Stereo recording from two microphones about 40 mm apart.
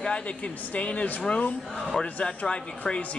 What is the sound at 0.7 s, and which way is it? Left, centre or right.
Speech, left.